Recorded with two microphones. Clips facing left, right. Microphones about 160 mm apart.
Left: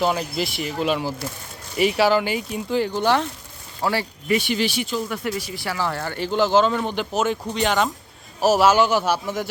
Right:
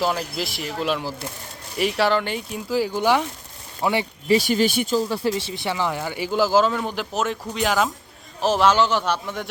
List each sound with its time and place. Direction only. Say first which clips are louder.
0.0 s speech: left 2 dB; centre (ahead or behind); by 4.4 s 20° right (ahead or behind)
4.4 s speech: right 3 dB; 45° right (ahead or behind)
4.9 s speech: right 4 dB; 30° right (ahead or behind); by 7.9 s 5° right (ahead or behind)
8.4 s a man's voice: left 2 dB; 10° left (ahead or behind)